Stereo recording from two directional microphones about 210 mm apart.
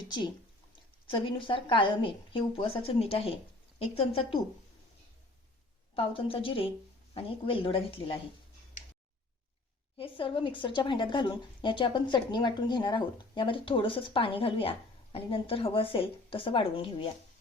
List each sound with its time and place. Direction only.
0.0 s a woman's voice: 20° left (ahead or behind)
5.9 s a woman's voice: 25° left (ahead or behind)
10.0 s a woman's voice: 25° left (ahead or behind)